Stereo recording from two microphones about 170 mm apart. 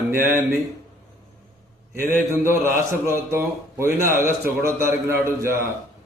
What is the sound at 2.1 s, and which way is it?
A man's voice, 15° right (ahead or behind).